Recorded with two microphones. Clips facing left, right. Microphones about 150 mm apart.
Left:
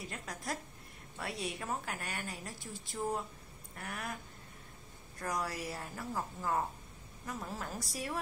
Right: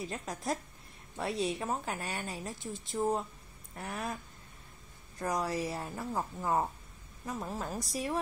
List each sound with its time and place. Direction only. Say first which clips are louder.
0.1 s a woman's voice: right 5 dB; 25° right (ahead or behind)
5.2 s a woman's voice: right 5 dB; 20° right (ahead or behind)